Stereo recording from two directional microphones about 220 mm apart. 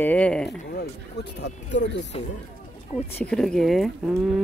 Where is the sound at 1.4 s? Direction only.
50° left (ahead or behind).